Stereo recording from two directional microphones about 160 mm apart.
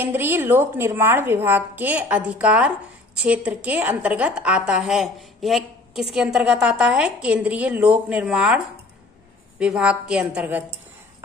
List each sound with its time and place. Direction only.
0.0 s a woman's voice: 15° right (ahead or behind)